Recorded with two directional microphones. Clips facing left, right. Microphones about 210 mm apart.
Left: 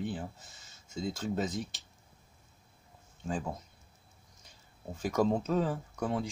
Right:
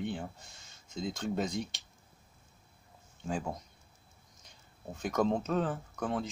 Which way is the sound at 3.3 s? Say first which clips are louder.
Even; centre (ahead or behind).